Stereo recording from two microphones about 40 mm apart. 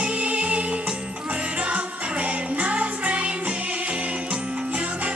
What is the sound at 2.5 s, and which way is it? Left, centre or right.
Music, right.